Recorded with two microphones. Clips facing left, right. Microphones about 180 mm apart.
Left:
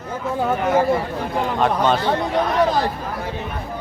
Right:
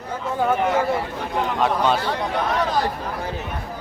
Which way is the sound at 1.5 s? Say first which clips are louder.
Left 2 dB; 5° right (ahead or behind).